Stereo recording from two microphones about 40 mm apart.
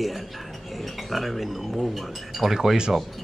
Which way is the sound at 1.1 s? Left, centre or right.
Centre.